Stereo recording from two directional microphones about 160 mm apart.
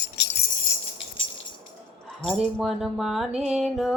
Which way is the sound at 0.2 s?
90° left.